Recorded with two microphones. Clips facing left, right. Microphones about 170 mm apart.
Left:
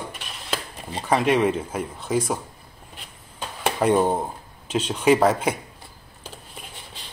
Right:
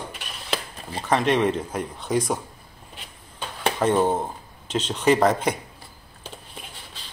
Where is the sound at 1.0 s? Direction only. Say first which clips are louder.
Left 1 dB; 5° left (ahead or behind).